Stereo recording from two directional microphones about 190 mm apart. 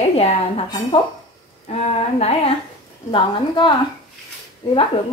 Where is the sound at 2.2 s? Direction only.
35° left (ahead or behind).